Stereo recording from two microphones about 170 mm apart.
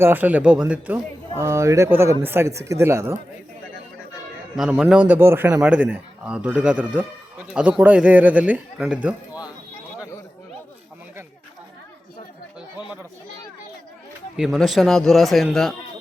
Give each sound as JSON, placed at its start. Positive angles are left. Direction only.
{"t": 0.0, "sound": "a man's voice", "side_deg": -10}
{"t": 4.5, "sound": "a man's voice", "side_deg": -5}
{"t": 14.3, "sound": "a man's voice", "side_deg": 0}